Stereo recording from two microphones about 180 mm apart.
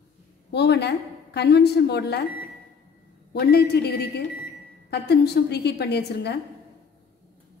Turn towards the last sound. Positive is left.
turn(degrees=65)  # may be behind; listen again after turning